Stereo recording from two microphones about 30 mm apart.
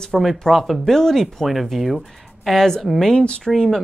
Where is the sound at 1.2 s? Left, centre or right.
Centre.